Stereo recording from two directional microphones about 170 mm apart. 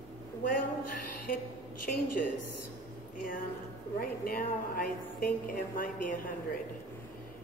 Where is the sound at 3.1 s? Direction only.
55° left (ahead or behind).